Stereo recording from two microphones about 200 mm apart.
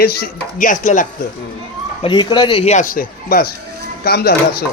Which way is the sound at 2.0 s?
25° left (ahead or behind).